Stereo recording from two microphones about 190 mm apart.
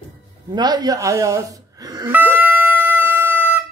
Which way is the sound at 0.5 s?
20° right (ahead or behind).